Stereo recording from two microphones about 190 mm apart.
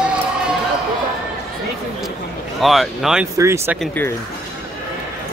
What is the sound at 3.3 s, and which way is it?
Speech, 15° right (ahead or behind).